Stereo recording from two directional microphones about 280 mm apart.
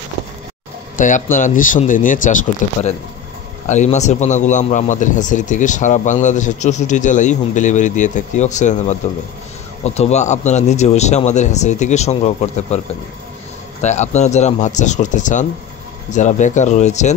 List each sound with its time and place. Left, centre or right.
0.9 s a man's voice: left